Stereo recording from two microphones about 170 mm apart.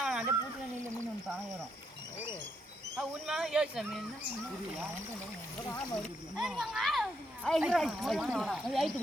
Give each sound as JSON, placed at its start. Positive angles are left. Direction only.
{"t": 0.0, "sound": "a sound", "side_deg": -5}
{"t": 3.0, "sound": "speech", "side_deg": -5}
{"t": 6.0, "sound": "speech", "side_deg": 0}